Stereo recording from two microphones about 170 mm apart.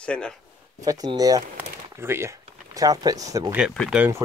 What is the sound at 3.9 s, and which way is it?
Speech, 10° right (ahead or behind).